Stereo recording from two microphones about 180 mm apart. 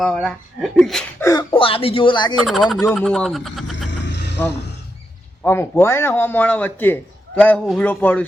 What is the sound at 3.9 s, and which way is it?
Vehicle, 75° left (ahead or behind).